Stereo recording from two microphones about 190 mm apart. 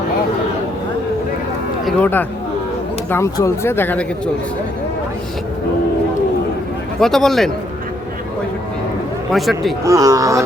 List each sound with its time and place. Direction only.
1.8 s speech: 10° left (ahead or behind)
7.0 s a man's voice: centre (ahead or behind)
9.3 s a man's voice: centre (ahead or behind)
9.8 s speech: 15° right (ahead or behind)